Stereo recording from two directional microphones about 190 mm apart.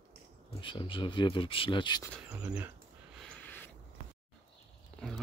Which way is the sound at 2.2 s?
5° right (ahead or behind).